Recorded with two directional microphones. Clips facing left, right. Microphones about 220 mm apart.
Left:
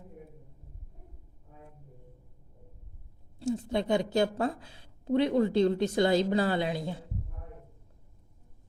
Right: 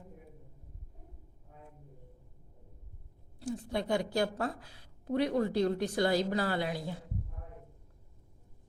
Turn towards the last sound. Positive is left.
turn(degrees=25)  # may be behind; listen again after turning